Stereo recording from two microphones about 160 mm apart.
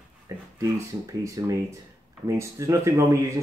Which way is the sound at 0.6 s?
20° right (ahead or behind).